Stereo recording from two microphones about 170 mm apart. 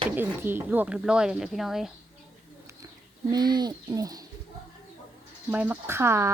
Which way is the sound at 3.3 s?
25° right (ahead or behind).